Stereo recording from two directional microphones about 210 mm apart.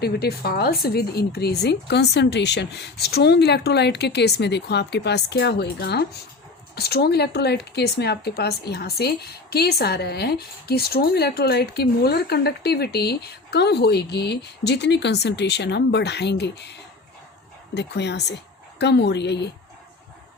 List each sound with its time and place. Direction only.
0.0 s speech: 50° left (ahead or behind)
17.7 s speech: 55° left (ahead or behind)